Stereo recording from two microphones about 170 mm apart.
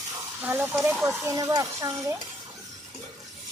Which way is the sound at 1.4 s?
20° right (ahead or behind).